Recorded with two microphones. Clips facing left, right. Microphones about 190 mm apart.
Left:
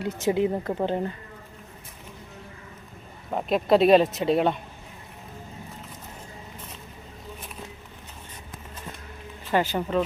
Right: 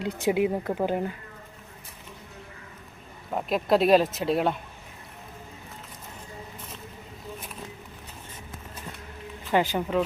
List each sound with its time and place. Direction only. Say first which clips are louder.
0.0 s speech: left 1 dB; 15° right (ahead or behind)
0.5 s speech: even; centre (ahead or behind)
3.3 s speech: left 3 dB; centre (ahead or behind)
9.5 s speech: even; 15° right (ahead or behind)